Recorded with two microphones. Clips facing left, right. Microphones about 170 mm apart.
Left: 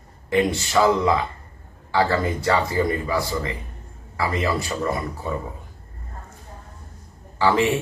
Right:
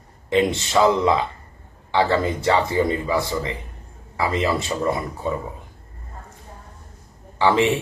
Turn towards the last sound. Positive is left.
turn(degrees=-20)  # may be behind; listen again after turning